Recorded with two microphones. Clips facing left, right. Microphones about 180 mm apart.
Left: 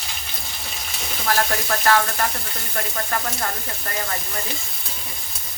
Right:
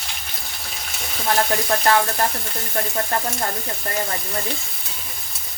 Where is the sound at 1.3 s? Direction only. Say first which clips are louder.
Right 2 dB; 25° right (ahead or behind).